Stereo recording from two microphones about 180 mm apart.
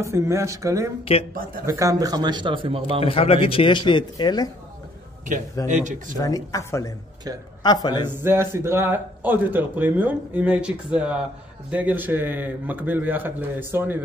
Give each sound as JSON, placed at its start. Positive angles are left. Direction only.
{"t": 0.0, "sound": "speech", "side_deg": -15}
{"t": 1.3, "sound": "speech", "side_deg": -50}
{"t": 1.7, "sound": "a man's voice", "side_deg": -20}
{"t": 3.0, "sound": "speech", "side_deg": 35}
{"t": 5.7, "sound": "speech", "side_deg": -45}
{"t": 6.1, "sound": "speech", "side_deg": 20}
{"t": 8.1, "sound": "speech", "side_deg": -10}